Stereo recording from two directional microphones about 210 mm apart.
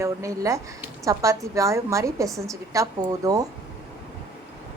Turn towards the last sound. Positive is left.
turn(degrees=-15)  # may be behind; listen again after turning